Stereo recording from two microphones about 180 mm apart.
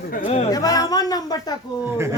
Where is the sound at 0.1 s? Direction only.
40° left (ahead or behind).